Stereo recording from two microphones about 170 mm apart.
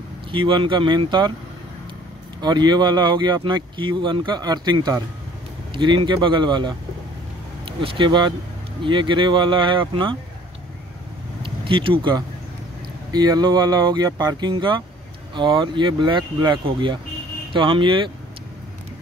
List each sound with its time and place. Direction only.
0.3 s speech: 30° right (ahead or behind)
2.4 s speech: 25° right (ahead or behind)
11.4 s speech: 30° right (ahead or behind)